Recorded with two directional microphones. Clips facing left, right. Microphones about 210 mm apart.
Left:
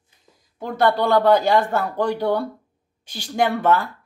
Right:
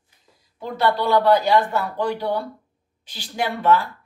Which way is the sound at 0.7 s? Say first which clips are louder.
Left 2 dB; 50° left (ahead or behind).